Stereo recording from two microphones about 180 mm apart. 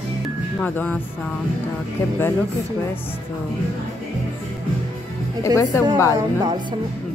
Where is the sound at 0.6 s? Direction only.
10° left (ahead or behind).